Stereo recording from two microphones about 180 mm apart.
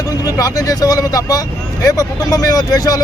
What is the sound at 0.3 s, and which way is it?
Speech, 20° left (ahead or behind).